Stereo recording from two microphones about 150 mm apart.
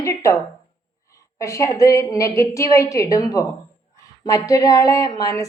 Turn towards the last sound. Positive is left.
turn(degrees=20)  # may be behind; listen again after turning